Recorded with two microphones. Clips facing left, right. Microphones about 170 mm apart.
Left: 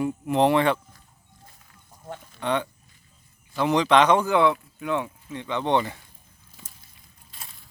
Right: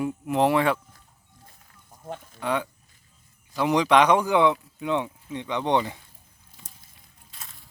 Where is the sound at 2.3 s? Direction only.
5° right (ahead or behind).